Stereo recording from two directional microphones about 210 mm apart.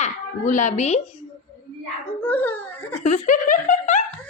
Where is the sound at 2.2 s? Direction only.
10° left (ahead or behind).